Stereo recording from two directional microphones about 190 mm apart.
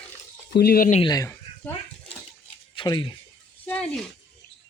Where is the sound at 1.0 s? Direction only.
20° left (ahead or behind).